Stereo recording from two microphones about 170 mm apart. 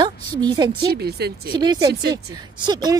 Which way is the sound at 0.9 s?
70° right (ahead or behind).